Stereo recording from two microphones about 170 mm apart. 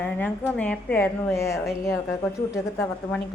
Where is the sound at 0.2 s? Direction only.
10° left (ahead or behind).